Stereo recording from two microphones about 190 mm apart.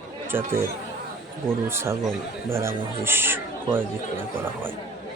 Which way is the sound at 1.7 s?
15° right (ahead or behind).